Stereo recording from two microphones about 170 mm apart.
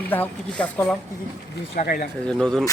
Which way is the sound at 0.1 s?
10° left (ahead or behind).